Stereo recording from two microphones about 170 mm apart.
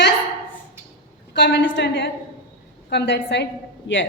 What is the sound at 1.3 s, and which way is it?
A woman's voice, 85° left.